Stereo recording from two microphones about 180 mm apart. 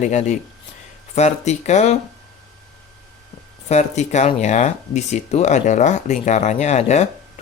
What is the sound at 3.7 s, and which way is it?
Speech, 40° left (ahead or behind).